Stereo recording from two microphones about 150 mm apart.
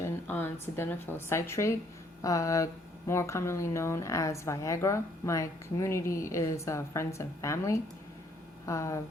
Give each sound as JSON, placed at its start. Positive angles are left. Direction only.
{"t": 0.0, "sound": "a woman's voice", "side_deg": 15}